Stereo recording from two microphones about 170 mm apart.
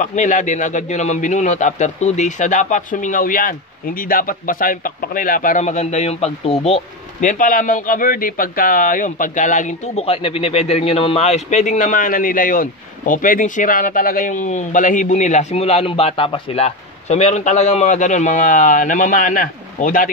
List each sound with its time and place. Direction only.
0.0 s a man's voice: 45° left (ahead or behind)